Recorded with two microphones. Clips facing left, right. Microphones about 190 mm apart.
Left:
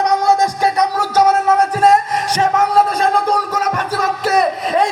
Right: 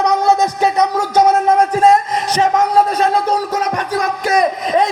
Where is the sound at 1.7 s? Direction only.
10° left (ahead or behind).